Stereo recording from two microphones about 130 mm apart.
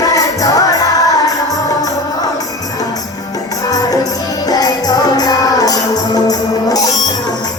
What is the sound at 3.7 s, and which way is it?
Music, 30° left (ahead or behind).